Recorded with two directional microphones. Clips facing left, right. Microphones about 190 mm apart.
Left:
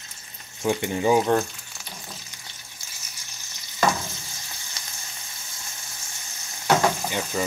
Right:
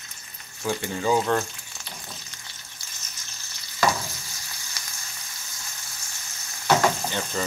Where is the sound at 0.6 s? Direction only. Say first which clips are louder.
Left 4 dB; 20° left (ahead or behind).